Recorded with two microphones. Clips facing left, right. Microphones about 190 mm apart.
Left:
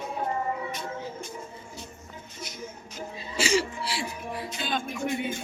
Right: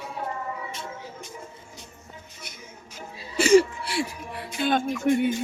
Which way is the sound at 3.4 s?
55° right (ahead or behind).